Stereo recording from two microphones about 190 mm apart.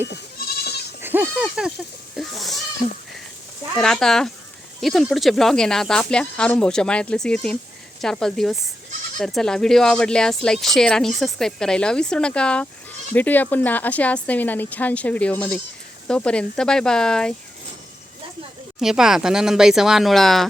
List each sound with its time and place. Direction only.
0.3 s goat: 55° left (ahead or behind)
1.0 s speech: 10° right (ahead or behind)
3.8 s speech: 5° left (ahead or behind)
18.8 s speech: centre (ahead or behind)